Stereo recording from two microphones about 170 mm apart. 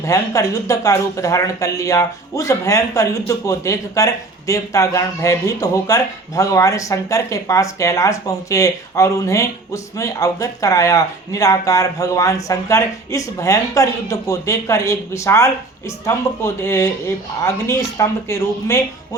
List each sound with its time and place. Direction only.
0.0 s speech: 20° left (ahead or behind)